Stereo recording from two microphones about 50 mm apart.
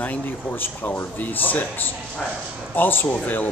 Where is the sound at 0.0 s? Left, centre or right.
Left.